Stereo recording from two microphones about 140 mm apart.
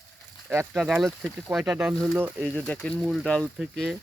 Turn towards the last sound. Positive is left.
turn(degrees=0)  # may be behind; listen again after turning